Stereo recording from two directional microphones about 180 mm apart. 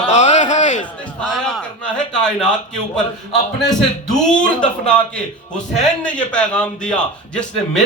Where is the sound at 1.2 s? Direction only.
Centre (ahead or behind).